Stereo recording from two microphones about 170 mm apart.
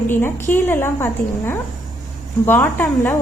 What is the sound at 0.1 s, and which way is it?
A woman's voice, 15° left (ahead or behind).